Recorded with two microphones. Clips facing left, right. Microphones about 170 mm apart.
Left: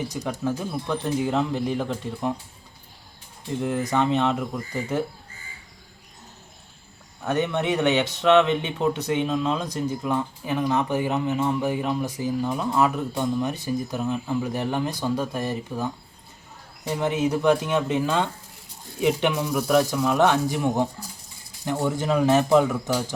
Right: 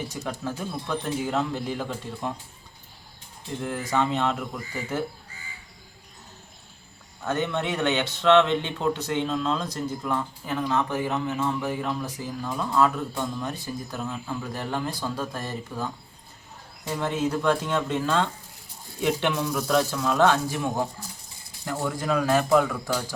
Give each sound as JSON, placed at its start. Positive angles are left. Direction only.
{"t": 0.1, "sound": "speech", "side_deg": 15}
{"t": 3.6, "sound": "speech", "side_deg": 20}
{"t": 7.2, "sound": "speech", "side_deg": 15}